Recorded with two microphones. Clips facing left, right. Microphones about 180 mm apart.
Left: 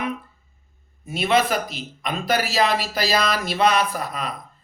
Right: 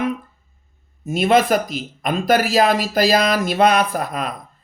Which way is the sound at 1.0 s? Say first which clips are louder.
Right 5 dB; 45° right (ahead or behind).